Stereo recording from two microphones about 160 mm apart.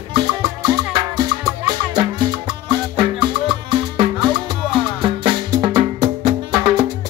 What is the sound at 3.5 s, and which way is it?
Music, 30° right (ahead or behind).